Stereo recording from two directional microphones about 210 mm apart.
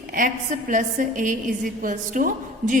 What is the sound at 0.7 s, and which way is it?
A woman's voice, 40° right (ahead or behind).